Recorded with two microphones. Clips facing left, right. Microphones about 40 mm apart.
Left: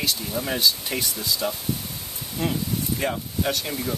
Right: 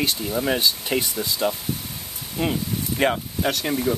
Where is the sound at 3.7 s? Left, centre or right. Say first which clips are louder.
Right 6 dB; centre.